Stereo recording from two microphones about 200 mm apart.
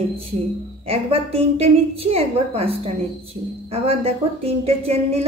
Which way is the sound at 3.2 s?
30° right (ahead or behind).